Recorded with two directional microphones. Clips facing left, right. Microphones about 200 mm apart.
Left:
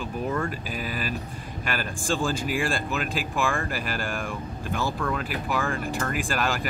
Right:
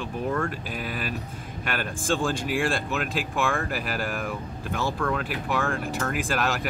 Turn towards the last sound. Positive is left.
turn(degrees=0)  # may be behind; listen again after turning